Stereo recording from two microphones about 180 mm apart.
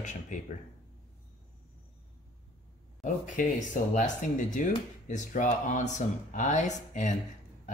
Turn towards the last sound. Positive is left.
turn(degrees=45)  # may be behind; listen again after turning